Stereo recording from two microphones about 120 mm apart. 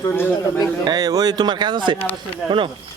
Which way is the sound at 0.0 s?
15° left (ahead or behind).